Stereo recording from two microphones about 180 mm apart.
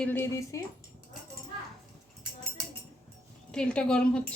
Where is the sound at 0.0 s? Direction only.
10° left (ahead or behind).